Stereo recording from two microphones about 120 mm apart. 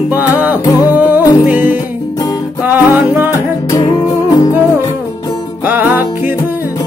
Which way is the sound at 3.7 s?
35° left (ahead or behind).